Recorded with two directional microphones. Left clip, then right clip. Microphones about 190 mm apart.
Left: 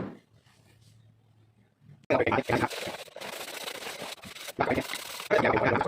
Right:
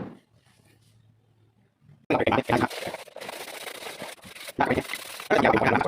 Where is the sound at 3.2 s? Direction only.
10° right (ahead or behind).